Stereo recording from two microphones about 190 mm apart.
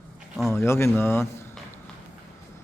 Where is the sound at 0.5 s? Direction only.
15° left (ahead or behind).